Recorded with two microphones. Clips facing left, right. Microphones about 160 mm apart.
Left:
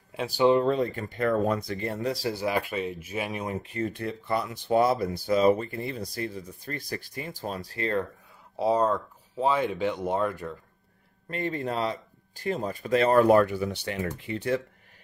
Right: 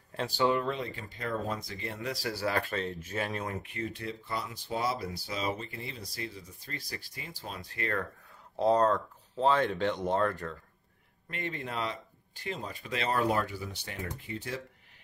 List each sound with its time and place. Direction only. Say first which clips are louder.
0.1 s speech: left 5 dB; 10° left (ahead or behind)
0.7 s speech: left 9 dB; 45° left (ahead or behind)
1.9 s speech: left 6 dB; 35° left (ahead or behind)
2.2 s speech: even; 20° left (ahead or behind)
3.7 s speech: left 6 dB; 50° left (ahead or behind); by 8.1 s 25° left (ahead or behind)
8.5 s speech: left 1 dB; 5° left (ahead or behind)
11.2 s speech: left 8 dB; 35° left (ahead or behind); by 14.6 s 70° left (ahead or behind)